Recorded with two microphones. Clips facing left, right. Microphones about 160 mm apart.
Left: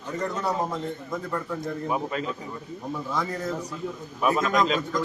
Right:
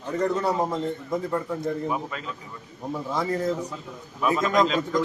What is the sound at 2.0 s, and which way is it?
Speech, 40° left (ahead or behind).